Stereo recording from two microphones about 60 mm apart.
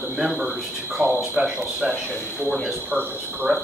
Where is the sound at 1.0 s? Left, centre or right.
Right.